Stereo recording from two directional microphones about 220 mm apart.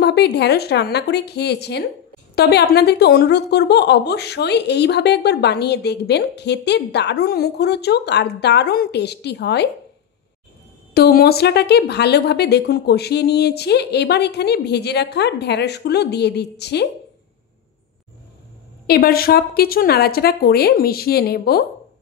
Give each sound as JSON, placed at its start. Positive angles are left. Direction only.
{"t": 0.0, "sound": "a woman's voice", "side_deg": 50}
{"t": 11.0, "sound": "a woman's voice", "side_deg": 45}
{"t": 18.9, "sound": "a woman's voice", "side_deg": 45}